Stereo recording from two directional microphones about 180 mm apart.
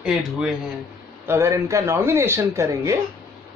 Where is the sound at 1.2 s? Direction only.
15° right (ahead or behind).